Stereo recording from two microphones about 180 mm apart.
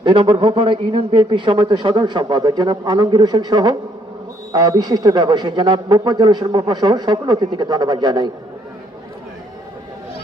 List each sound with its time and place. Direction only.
0.0 s a man's voice: 25° right (ahead or behind)